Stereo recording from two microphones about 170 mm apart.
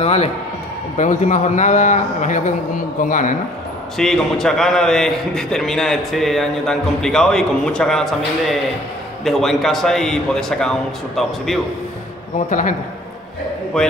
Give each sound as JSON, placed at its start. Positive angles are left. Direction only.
{"t": 0.0, "sound": "a man's voice", "side_deg": 40}
{"t": 4.0, "sound": "a man's voice", "side_deg": 0}
{"t": 12.4, "sound": "a man's voice", "side_deg": 50}
{"t": 13.7, "sound": "a man's voice", "side_deg": 5}